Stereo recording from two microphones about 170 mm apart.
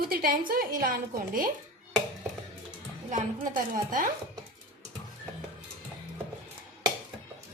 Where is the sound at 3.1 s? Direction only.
50° right (ahead or behind).